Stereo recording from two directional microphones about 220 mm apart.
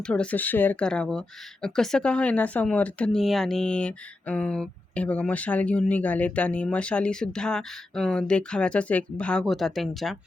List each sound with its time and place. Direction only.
0.0 s speech: 5° left (ahead or behind)